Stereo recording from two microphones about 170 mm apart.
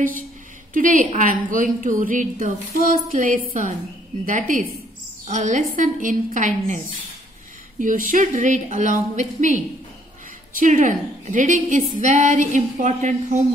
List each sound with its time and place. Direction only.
0.7 s a woman's voice: 50° right (ahead or behind)
7.8 s a woman's voice: 50° right (ahead or behind)
10.6 s a woman's voice: 50° right (ahead or behind)